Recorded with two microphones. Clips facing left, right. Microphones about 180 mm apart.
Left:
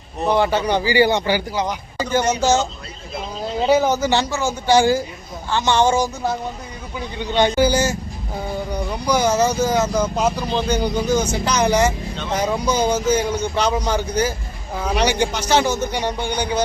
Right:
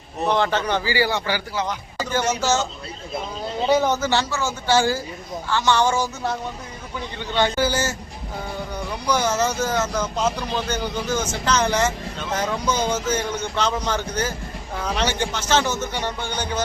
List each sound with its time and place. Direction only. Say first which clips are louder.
0.3 s speech: left 3 dB; 10° left (ahead or behind)
3.7 s speech: left 3 dB; 10° left (ahead or behind)
7.2 s a man's voice: left 5 dB; 15° left (ahead or behind)